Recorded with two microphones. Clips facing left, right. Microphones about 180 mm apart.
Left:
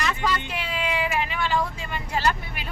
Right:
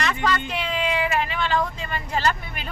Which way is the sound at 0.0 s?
5° left (ahead or behind).